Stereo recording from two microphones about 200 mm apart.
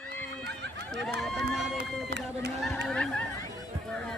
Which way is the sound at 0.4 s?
60° right (ahead or behind).